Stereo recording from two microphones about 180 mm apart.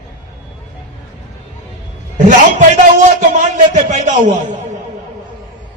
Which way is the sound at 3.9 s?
40° right (ahead or behind).